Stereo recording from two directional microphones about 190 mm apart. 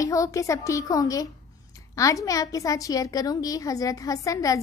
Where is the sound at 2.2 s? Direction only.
20° left (ahead or behind).